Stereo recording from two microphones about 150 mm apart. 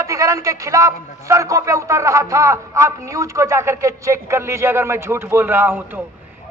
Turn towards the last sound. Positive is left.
turn(degrees=-15)  # may be behind; listen again after turning